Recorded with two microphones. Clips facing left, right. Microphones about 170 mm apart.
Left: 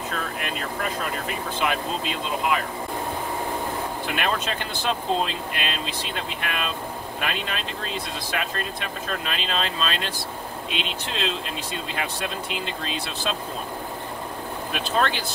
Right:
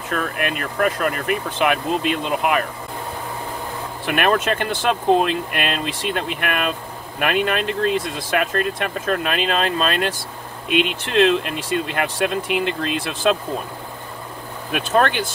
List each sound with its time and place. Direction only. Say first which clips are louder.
0.1 s speech: right 11 dB; 60° right (ahead or behind)
4.0 s speech: right 10 dB; 55° right (ahead or behind)
14.7 s speech: right 6 dB; 50° right (ahead or behind)